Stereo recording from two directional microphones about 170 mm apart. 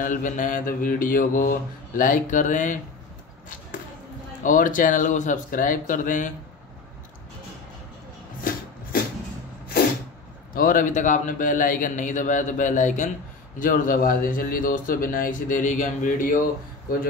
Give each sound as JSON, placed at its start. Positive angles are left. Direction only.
{"t": 0.0, "sound": "mantra", "side_deg": 50}
{"t": 4.4, "sound": "mantra", "side_deg": 50}
{"t": 10.5, "sound": "mantra", "side_deg": 55}